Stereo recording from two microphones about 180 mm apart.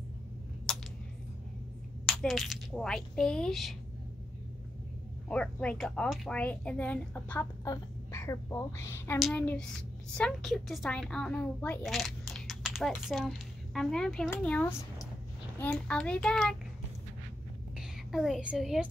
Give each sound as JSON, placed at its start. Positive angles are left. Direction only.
{"t": 2.0, "sound": "a woman's voice", "side_deg": 0}
{"t": 5.3, "sound": "a woman's voice", "side_deg": 5}
{"t": 17.7, "sound": "a woman's voice", "side_deg": 0}